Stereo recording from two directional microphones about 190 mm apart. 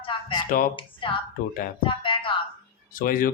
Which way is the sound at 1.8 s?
25° left (ahead or behind).